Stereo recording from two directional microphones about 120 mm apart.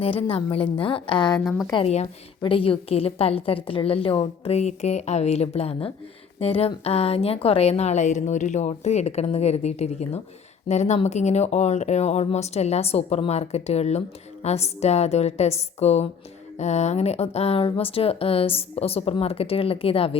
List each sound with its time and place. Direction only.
0.0 s a woman's voice: 50° left (ahead or behind)
1.3 s a woman's voice: centre (ahead or behind)
1.7 s a woman's voice: 60° left (ahead or behind)
2.4 s a woman's voice: 50° left (ahead or behind)